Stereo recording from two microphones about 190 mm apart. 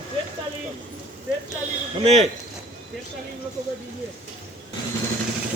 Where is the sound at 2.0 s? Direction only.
35° right (ahead or behind).